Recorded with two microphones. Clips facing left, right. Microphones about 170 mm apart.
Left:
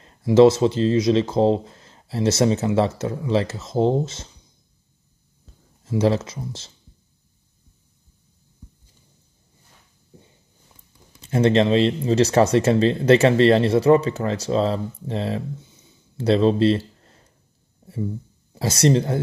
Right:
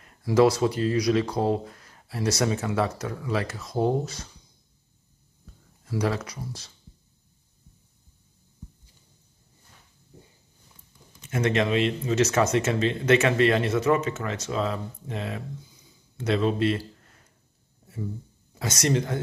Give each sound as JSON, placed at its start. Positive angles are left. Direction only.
{"t": 0.0, "sound": "speech", "side_deg": 25}
{"t": 5.9, "sound": "speech", "side_deg": 25}
{"t": 11.1, "sound": "speech", "side_deg": 30}
{"t": 18.5, "sound": "speech", "side_deg": 30}